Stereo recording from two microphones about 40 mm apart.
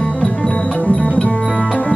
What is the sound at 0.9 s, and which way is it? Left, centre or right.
Music, left.